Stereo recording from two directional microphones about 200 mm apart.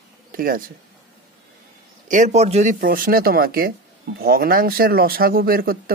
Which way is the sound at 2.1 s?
35° right (ahead or behind).